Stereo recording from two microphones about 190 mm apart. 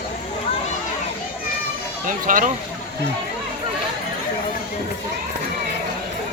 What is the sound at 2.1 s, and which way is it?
Speech, 45° right (ahead or behind).